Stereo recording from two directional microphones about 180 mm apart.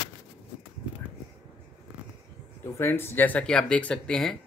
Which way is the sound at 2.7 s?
15° left (ahead or behind).